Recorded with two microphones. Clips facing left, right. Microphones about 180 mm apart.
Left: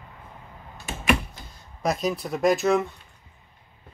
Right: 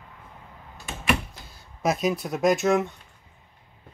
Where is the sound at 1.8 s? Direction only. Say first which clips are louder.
Right 1 dB; centre (ahead or behind).